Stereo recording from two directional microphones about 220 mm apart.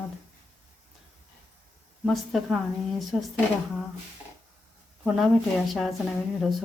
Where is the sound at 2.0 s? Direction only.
Centre (ahead or behind).